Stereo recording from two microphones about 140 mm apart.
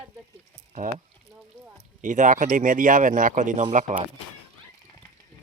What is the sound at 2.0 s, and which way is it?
Speech, 65° right (ahead or behind).